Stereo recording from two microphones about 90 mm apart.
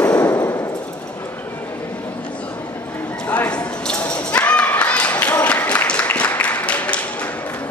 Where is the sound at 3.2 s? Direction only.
15° left (ahead or behind).